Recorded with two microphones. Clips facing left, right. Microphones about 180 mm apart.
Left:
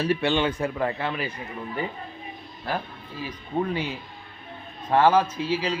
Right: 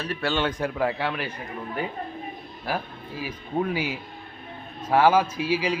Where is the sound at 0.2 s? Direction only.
Centre (ahead or behind).